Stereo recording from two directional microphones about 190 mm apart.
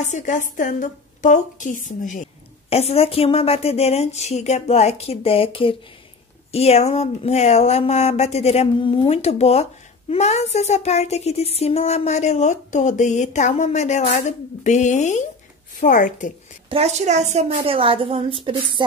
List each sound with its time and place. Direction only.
0.0 s a woman's voice: 40° left (ahead or behind)
16.6 s a woman's voice: 35° right (ahead or behind)